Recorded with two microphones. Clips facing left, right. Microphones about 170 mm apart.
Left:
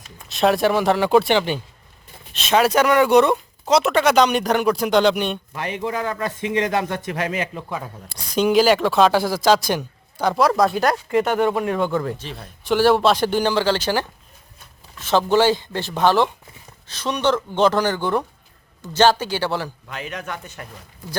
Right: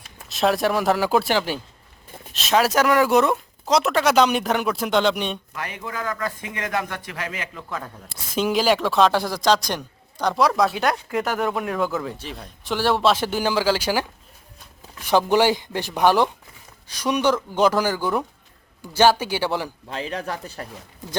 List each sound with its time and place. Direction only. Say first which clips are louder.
0.3 s speech: left 3 dB; centre (ahead or behind)
5.5 s speech: left 6 dB; 25° left (ahead or behind)
8.1 s speech: left 5 dB; centre (ahead or behind)
12.4 s speech: left 7 dB; centre (ahead or behind)
19.9 s speech: right 6 dB; 30° right (ahead or behind)